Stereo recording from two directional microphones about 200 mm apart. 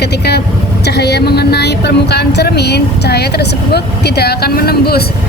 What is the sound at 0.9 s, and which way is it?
Speech, 55° left (ahead or behind).